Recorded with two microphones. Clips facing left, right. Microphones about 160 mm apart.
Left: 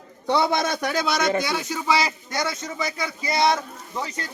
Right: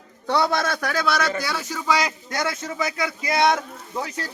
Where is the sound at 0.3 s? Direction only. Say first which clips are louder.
Even; 20° left (ahead or behind).